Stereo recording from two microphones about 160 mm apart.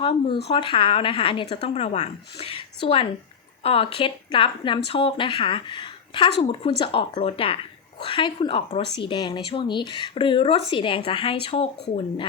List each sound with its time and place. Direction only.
0.0 s speech: 30° left (ahead or behind)